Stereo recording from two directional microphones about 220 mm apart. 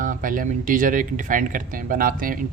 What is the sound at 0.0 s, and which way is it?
Speech, 35° right (ahead or behind).